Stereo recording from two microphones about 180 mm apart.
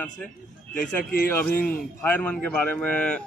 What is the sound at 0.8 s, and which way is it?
Speech, 60° left (ahead or behind).